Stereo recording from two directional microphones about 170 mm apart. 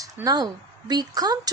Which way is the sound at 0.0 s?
20° right (ahead or behind).